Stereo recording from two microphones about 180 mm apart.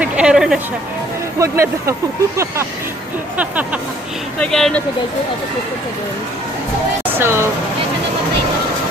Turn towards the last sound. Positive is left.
turn(degrees=-15)  # may be behind; listen again after turning